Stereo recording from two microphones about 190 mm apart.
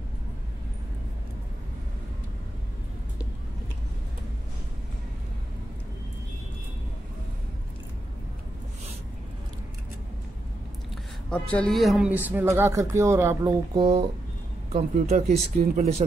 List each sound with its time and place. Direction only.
11.2 s speech: 5° left (ahead or behind); by 13.5 s 15° right (ahead or behind)
13.7 s speech: 30° right (ahead or behind)